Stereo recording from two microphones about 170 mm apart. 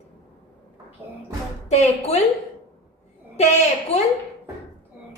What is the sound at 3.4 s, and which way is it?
Speech, 40° left (ahead or behind).